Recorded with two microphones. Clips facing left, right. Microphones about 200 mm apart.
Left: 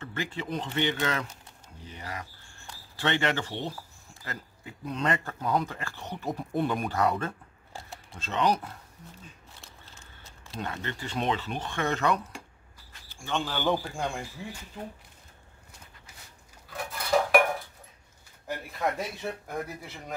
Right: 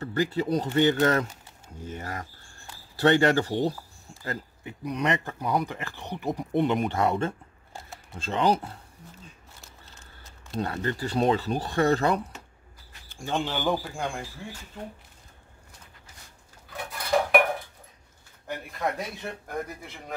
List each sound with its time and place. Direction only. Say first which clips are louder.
0.0 s speech: right 8 dB; 40° right (ahead or behind)
4.6 s speech: right 2 dB; 15° right (ahead or behind)
10.6 s speech: right 6 dB; 40° right (ahead or behind)
13.7 s a man's voice: even; centre (ahead or behind)
16.7 s dishes: right 1 dB; centre (ahead or behind)
18.5 s a man's voice: even; centre (ahead or behind)